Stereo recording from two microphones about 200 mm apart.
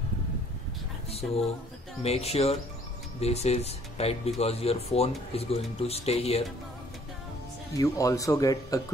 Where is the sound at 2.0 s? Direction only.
30° left (ahead or behind).